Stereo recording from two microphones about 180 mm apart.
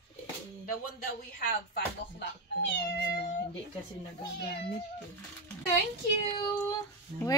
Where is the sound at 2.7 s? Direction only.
70° left (ahead or behind).